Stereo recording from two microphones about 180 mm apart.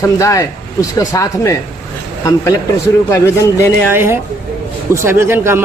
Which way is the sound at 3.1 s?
15° left (ahead or behind).